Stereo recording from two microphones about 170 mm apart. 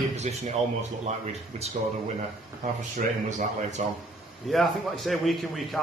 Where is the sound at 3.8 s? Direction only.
45° right (ahead or behind).